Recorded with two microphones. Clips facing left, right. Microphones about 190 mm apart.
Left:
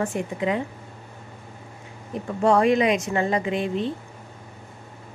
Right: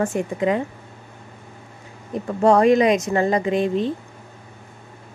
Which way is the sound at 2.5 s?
40° right (ahead or behind).